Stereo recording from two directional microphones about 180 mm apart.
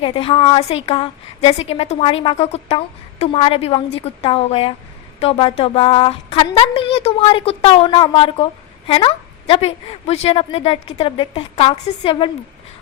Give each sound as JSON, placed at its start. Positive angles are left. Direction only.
{"t": 0.0, "sound": "a woman's voice", "side_deg": 30}